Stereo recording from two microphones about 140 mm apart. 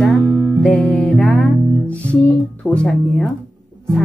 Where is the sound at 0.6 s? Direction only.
10° left (ahead or behind).